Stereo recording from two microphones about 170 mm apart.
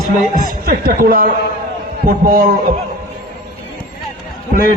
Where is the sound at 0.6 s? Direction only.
60° right (ahead or behind).